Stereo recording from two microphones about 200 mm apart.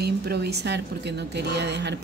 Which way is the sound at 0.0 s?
50° right (ahead or behind).